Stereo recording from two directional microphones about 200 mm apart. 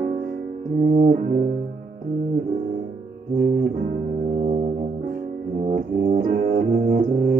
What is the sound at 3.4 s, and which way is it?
Brass instrument, 45° right (ahead or behind).